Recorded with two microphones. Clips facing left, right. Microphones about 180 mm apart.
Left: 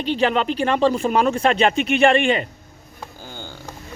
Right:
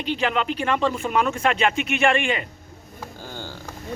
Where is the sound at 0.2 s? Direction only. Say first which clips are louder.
Left 7 dB; 35° left (ahead or behind).